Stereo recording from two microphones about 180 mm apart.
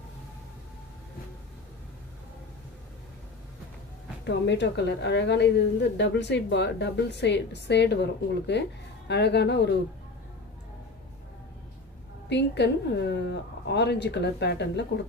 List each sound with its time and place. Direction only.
4.2 s a woman's voice: 70° left (ahead or behind)
12.3 s a woman's voice: 75° left (ahead or behind)